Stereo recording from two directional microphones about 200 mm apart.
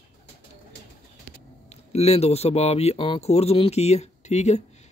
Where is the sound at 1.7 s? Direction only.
30° left (ahead or behind).